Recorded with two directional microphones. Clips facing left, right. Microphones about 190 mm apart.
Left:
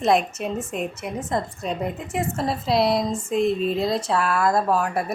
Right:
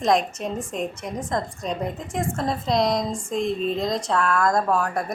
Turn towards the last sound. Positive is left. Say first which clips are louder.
# left 1 dB
turn(degrees=5)  # may be behind; listen again after turning